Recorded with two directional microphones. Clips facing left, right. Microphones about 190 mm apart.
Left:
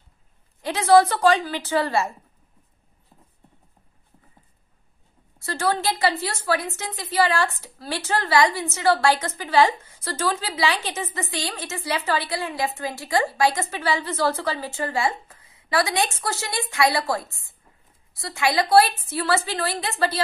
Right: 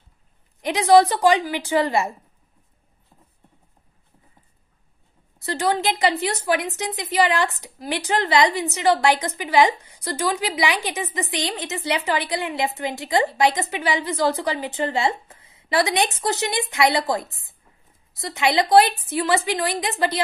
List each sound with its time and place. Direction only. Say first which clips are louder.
0.6 s a woman's voice: right 1 dB; 15° right (ahead or behind)
5.4 s a woman's voice: right 2 dB; 15° right (ahead or behind)